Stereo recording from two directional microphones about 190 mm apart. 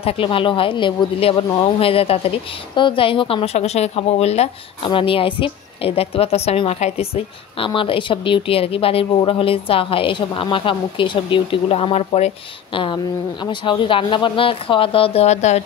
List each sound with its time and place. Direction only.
0.0 s speech: 30° left (ahead or behind)